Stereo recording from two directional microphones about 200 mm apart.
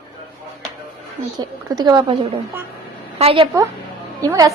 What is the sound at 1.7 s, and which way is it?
Speech, 20° right (ahead or behind).